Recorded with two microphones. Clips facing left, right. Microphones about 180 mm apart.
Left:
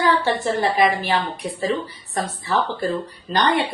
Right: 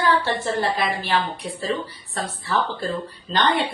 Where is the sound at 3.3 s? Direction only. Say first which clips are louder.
Left 2 dB; 10° left (ahead or behind).